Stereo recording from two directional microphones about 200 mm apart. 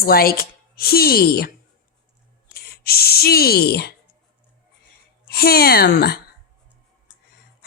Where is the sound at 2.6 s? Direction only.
50° left (ahead or behind).